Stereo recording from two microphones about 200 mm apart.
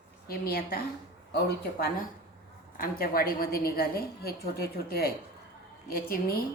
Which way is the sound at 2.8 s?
45° left (ahead or behind).